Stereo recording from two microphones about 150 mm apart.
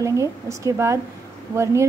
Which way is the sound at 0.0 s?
20° right (ahead or behind).